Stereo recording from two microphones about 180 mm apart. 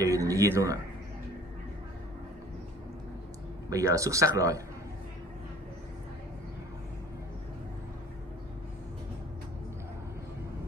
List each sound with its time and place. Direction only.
0.0 s speech: 20° right (ahead or behind)
3.7 s speech: 20° right (ahead or behind)